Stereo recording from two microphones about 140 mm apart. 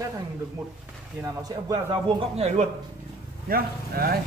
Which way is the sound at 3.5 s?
90° right.